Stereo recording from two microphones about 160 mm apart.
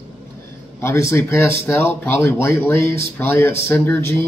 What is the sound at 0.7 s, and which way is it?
Speech, 15° left (ahead or behind).